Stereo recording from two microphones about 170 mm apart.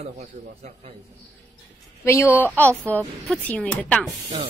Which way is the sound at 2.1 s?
15° left (ahead or behind).